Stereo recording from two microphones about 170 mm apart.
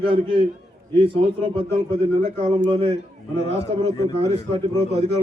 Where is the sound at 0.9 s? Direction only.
30° right (ahead or behind).